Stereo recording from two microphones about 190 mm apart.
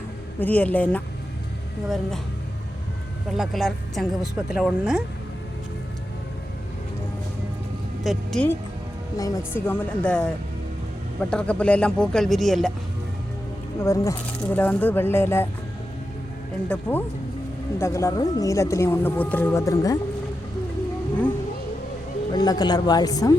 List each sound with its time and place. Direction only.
0.3 s speech: 10° left (ahead or behind)
3.3 s speech: centre (ahead or behind)
8.0 s speech: centre (ahead or behind)
9.1 s speech: 15° left (ahead or behind)
13.7 s speech: 15° left (ahead or behind)
16.6 s speech: 10° left (ahead or behind)
22.3 s speech: 20° left (ahead or behind)